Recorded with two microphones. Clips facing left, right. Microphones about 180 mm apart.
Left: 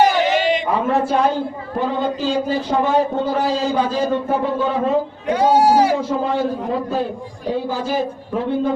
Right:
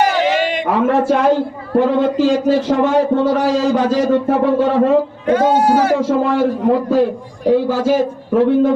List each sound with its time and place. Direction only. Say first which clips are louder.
0.7 s a man's voice: right 4 dB; 80° right
6.0 s a man's voice: right 5 dB; 90° right
7.5 s a man's voice: right 7 dB; 90° right